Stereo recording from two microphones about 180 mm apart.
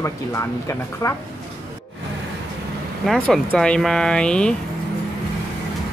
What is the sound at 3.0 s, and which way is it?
Speech, centre (ahead or behind).